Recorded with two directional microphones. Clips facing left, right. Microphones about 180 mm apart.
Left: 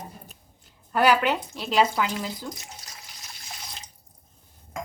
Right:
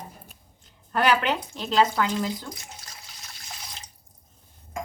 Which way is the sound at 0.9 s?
10° left (ahead or behind).